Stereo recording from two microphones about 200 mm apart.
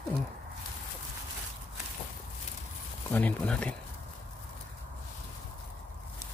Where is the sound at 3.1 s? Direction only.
10° left (ahead or behind).